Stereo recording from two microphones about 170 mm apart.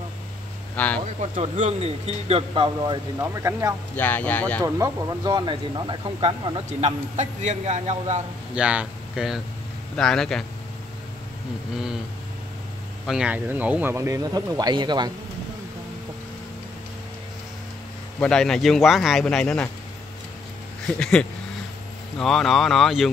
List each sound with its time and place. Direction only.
0.7 s speech: 10° left (ahead or behind)
1.2 s speech: 40° right (ahead or behind); by 3.7 s 15° right (ahead or behind)
3.9 s speech: 10° left (ahead or behind)
4.6 s speech: 20° right (ahead or behind); by 8.2 s 40° right (ahead or behind)
8.5 s speech: 5° right (ahead or behind)
13.0 s speech: 5° right (ahead or behind); by 15.0 s 25° right (ahead or behind)
18.2 s speech: 5° left (ahead or behind)
20.8 s speech: 5° left (ahead or behind)